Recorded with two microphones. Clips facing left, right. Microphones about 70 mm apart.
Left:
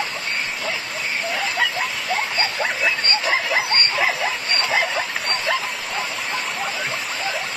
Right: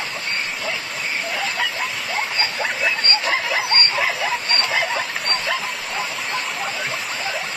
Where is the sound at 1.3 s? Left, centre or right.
Centre.